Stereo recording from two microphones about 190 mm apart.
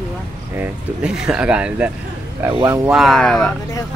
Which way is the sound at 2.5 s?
25° right (ahead or behind).